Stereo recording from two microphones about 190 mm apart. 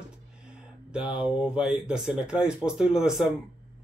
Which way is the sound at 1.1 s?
5° right (ahead or behind).